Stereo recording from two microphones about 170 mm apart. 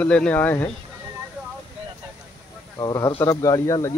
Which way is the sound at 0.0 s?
5° left (ahead or behind).